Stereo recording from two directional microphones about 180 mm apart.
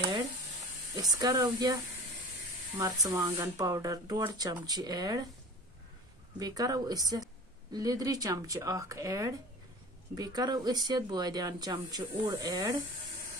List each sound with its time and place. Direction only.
1.1 s speech: 20° right (ahead or behind)
2.8 s speech: 15° right (ahead or behind)
6.4 s speech: 20° right (ahead or behind)